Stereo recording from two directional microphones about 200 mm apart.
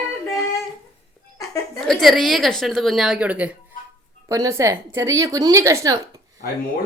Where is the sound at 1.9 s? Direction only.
Centre (ahead or behind); by 6.0 s 15° right (ahead or behind).